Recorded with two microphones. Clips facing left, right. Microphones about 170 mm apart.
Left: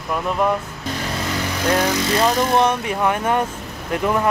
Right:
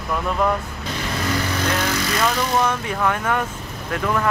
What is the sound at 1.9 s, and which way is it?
Speech, 25° left (ahead or behind).